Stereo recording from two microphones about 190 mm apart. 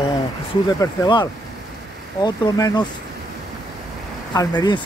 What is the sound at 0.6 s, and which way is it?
Speech, 20° left (ahead or behind).